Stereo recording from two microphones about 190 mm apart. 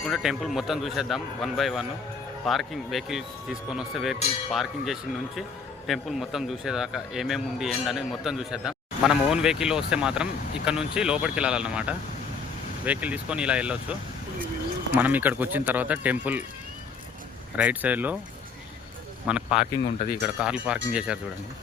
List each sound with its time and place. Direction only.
0.0 s a man's voice: centre (ahead or behind)
14.9 s speech: 10° right (ahead or behind)
17.6 s speech: 10° right (ahead or behind)
19.3 s a man's voice: 5° right (ahead or behind)